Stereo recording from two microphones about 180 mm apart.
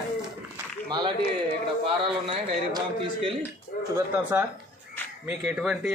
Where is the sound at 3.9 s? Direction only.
10° right (ahead or behind).